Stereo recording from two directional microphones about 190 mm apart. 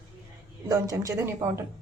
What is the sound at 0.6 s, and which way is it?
Speech, 20° right (ahead or behind).